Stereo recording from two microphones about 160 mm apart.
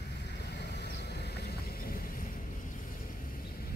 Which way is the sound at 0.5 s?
90° left.